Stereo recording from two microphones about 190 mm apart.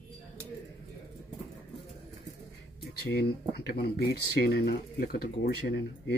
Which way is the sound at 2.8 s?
55° left (ahead or behind).